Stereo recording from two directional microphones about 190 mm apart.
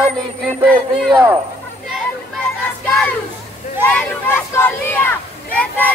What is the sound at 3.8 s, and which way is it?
Speech, 5° left (ahead or behind).